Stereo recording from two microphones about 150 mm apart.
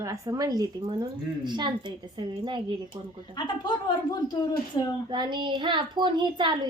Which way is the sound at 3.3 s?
30° left (ahead or behind).